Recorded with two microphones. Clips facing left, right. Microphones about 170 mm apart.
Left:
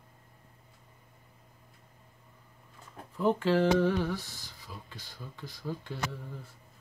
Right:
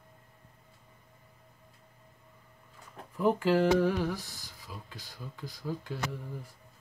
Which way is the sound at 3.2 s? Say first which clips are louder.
Even; 10° right (ahead or behind).